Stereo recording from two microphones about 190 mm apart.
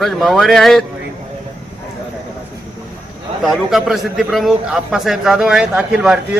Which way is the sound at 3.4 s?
Centre (ahead or behind).